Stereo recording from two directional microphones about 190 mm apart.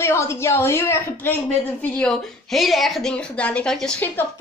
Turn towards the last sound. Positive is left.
turn(degrees=5)  # may be behind; listen again after turning